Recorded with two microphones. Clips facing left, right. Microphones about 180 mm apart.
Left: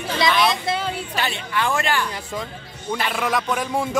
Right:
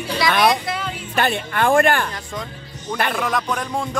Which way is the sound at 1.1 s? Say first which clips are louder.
Right 4 dB; 50° right (ahead or behind).